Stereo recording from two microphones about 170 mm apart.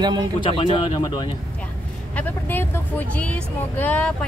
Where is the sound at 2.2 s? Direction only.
10° left (ahead or behind).